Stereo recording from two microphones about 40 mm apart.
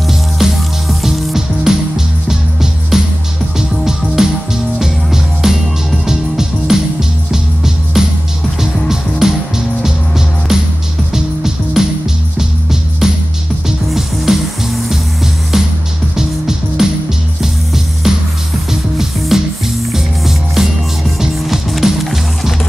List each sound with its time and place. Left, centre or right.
0.1 s music: centre
1.3 s music: centre
13.0 s music: centre
15.5 s music: centre
18.1 s music: centre